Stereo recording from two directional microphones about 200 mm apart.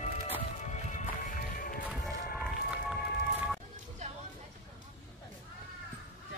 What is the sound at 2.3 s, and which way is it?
Music, centre (ahead or behind).